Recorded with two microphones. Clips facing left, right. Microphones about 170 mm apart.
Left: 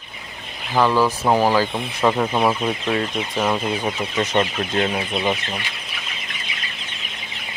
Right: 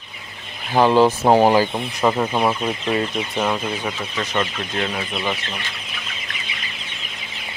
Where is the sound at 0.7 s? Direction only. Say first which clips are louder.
Right 3 dB; 20° right (ahead or behind).